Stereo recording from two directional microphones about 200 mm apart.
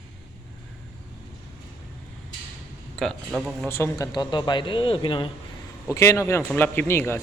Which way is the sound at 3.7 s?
15° left (ahead or behind).